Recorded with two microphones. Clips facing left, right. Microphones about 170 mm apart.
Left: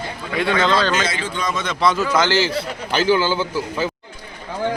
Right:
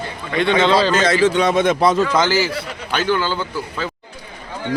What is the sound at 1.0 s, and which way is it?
Speech, 80° right.